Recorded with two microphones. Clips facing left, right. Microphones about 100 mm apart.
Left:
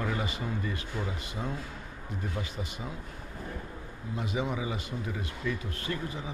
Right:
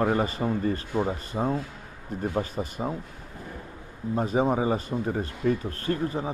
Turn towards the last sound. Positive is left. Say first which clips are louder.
# right 8 dB
turn(degrees=-45)  # may be behind; listen again after turning